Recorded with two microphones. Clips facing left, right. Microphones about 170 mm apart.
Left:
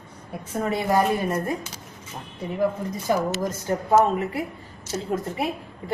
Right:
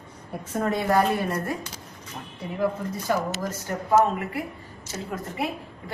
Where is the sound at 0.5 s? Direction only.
10° left (ahead or behind).